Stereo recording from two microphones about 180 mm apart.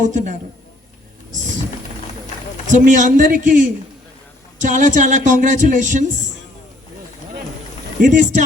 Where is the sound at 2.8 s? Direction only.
45° right (ahead or behind).